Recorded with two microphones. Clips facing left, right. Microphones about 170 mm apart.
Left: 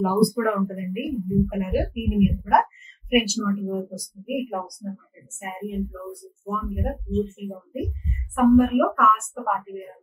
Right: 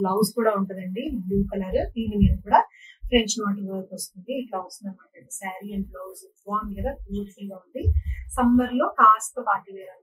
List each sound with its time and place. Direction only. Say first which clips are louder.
0.0 s speech: left 1 dB; centre (ahead or behind)